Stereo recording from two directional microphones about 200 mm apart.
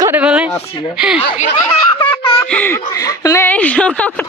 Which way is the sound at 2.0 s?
25° left (ahead or behind).